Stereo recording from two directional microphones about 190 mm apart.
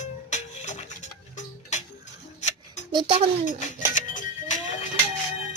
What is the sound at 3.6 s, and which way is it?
Music, 40° left (ahead or behind).